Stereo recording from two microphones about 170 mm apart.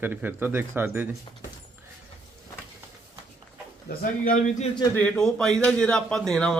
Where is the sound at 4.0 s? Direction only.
55° left (ahead or behind).